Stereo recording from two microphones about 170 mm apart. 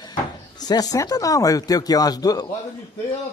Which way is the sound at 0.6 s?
20° left (ahead or behind).